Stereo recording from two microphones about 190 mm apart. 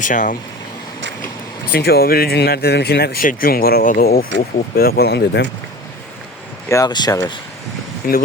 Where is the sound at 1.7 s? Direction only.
55° left (ahead or behind).